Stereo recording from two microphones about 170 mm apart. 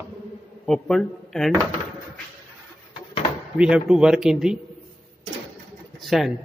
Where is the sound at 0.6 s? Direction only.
5° left (ahead or behind).